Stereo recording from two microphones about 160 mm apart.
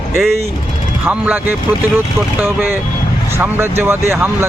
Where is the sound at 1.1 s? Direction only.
15° right (ahead or behind).